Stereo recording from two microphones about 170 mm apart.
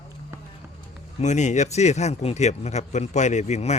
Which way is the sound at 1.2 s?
45° left (ahead or behind).